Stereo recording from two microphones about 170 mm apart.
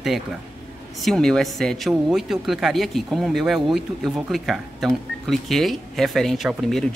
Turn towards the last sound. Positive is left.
turn(degrees=0)  # may be behind; listen again after turning